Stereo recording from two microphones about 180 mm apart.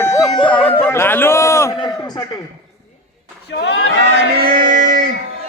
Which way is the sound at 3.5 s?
75° left (ahead or behind).